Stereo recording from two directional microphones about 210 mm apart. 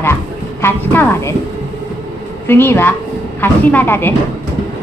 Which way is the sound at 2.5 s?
10° left (ahead or behind).